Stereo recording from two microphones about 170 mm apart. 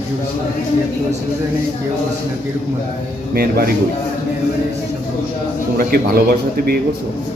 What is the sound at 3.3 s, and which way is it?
Speech, 60° right (ahead or behind).